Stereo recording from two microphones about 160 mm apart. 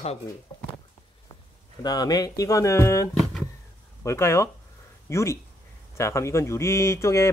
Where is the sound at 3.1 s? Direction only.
Centre (ahead or behind).